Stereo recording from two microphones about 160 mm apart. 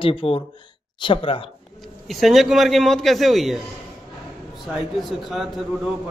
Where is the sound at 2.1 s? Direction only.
Centre (ahead or behind).